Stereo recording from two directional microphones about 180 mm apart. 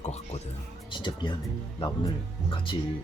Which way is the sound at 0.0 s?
35° left (ahead or behind).